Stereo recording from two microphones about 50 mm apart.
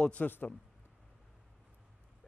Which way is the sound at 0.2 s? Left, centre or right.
Left.